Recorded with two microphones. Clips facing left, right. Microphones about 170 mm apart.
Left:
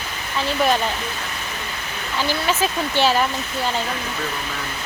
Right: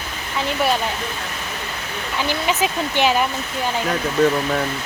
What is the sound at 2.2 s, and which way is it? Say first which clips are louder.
Speech: even; 15° right (ahead or behind).